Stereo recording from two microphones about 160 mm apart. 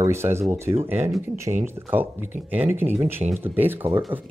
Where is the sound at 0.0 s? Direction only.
15° right (ahead or behind).